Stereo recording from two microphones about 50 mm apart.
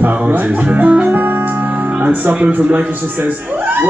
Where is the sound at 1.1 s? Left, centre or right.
Right.